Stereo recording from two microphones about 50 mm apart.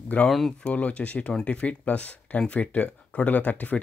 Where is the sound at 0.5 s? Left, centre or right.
Left.